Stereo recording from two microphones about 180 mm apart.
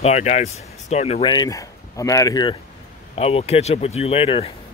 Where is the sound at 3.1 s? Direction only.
35° left (ahead or behind).